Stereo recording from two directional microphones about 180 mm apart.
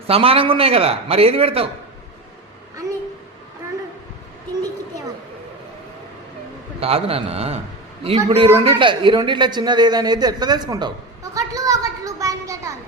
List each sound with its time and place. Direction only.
0.1 s a man's voice: 30° right (ahead or behind)
6.7 s a man's voice: 35° right (ahead or behind); by 12.7 s 15° right (ahead or behind)